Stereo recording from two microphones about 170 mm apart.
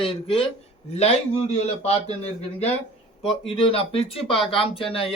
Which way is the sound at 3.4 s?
30° left (ahead or behind).